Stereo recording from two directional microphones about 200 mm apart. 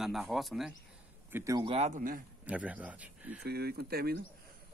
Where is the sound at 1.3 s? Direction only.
15° right (ahead or behind).